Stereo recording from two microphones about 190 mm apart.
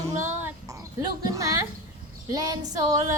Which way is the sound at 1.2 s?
20° right (ahead or behind).